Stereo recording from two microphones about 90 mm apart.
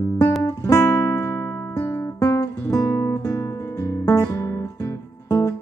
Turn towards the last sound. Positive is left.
turn(degrees=40)  # may be behind; listen again after turning